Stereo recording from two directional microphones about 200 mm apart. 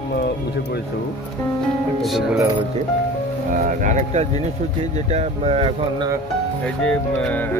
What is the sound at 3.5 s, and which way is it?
Speech, 40° right (ahead or behind).